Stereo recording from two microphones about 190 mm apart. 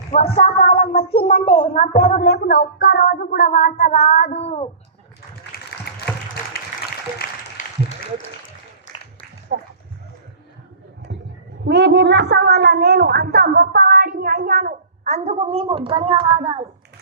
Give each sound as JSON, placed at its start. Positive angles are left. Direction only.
{"t": 0.1, "sound": "a sound", "side_deg": 35}
{"t": 1.3, "sound": "child singing", "side_deg": 50}
{"t": 1.8, "sound": "a woman's voice", "side_deg": 35}
{"t": 2.2, "sound": "child singing", "side_deg": 55}
{"t": 5.9, "sound": "applause", "side_deg": 55}
{"t": 7.2, "sound": "a sound", "side_deg": 45}
{"t": 9.5, "sound": "a woman's voice", "side_deg": -55}
{"t": 11.1, "sound": "a sound", "side_deg": -65}
{"t": 11.7, "sound": "a woman's voice", "side_deg": -65}